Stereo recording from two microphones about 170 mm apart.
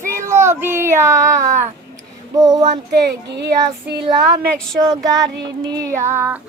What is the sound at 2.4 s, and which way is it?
Child singing, 20° right (ahead or behind).